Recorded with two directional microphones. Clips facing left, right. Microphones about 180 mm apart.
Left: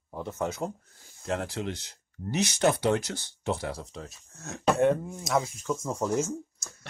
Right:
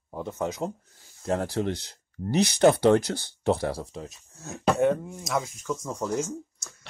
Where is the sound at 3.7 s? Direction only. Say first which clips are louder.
Right 4 dB; 25° right (ahead or behind).